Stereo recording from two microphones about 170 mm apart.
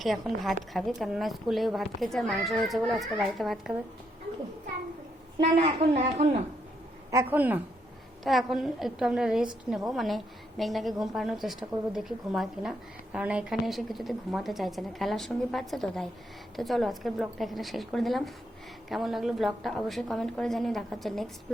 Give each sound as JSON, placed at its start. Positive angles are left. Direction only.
{"t": 0.0, "sound": "a woman's voice", "side_deg": 0}
{"t": 5.6, "sound": "speech", "side_deg": -35}
{"t": 7.1, "sound": "a woman's voice", "side_deg": -15}